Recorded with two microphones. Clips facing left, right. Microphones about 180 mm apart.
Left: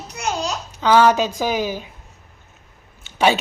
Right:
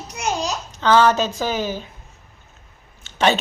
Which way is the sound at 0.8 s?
10° left (ahead or behind).